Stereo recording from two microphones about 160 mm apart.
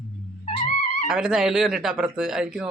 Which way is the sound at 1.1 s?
5° right (ahead or behind).